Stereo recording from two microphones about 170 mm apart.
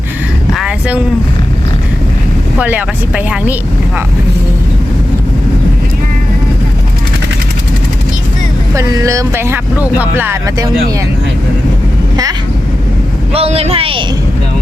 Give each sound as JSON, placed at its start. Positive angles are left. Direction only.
{"t": 2.6, "sound": "speech", "side_deg": -10}
{"t": 8.7, "sound": "speech", "side_deg": -20}
{"t": 13.3, "sound": "speech", "side_deg": -35}